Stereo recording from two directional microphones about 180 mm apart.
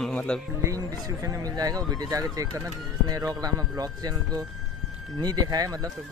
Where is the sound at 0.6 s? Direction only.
20° right (ahead or behind).